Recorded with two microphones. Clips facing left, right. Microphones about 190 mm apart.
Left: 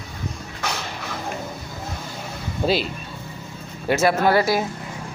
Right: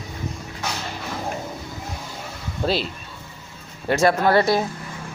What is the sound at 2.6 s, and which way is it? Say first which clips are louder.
Speech: left 2 dB; 5° left (ahead or behind).